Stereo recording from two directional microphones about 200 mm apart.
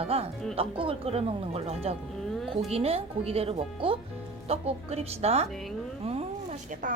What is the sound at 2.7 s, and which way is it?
Speech, 30° right (ahead or behind).